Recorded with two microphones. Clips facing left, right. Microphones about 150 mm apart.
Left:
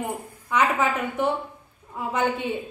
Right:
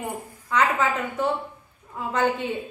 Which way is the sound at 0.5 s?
15° left (ahead or behind).